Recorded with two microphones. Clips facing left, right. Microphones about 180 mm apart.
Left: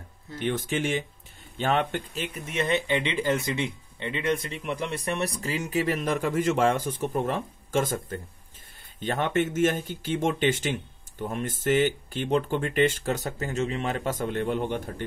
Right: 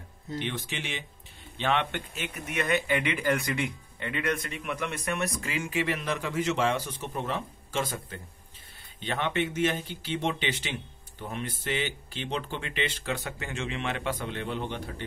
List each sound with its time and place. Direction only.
0.4 s speech: 45° left (ahead or behind)